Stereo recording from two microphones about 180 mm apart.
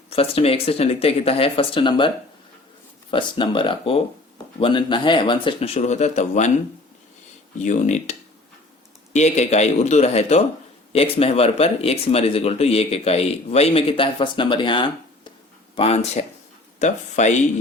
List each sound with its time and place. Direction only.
0.1 s speech: 35° left (ahead or behind)
7.6 s speech: 40° left (ahead or behind)
9.1 s speech: 40° left (ahead or behind)